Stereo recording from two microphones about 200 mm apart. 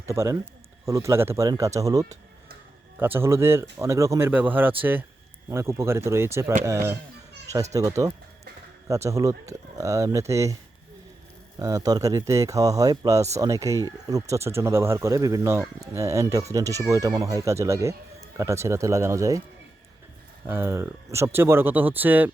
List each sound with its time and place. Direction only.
0.0 s speech: 15° right (ahead or behind)
11.6 s speech: 15° right (ahead or behind)
20.5 s speech: 15° right (ahead or behind)